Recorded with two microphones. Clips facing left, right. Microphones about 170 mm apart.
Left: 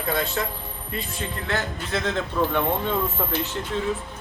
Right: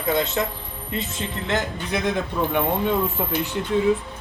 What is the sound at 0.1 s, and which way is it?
Speech, 20° right (ahead or behind).